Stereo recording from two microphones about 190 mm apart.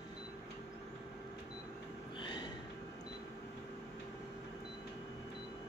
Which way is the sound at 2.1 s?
25° left (ahead or behind).